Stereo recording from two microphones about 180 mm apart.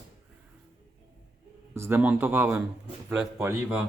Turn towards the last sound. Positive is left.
turn(degrees=-15)  # may be behind; listen again after turning